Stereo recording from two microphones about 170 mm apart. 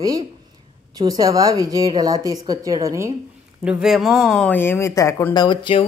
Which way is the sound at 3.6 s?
Centre (ahead or behind).